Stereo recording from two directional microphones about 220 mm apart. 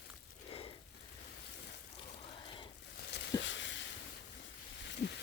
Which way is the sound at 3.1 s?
55° left (ahead or behind).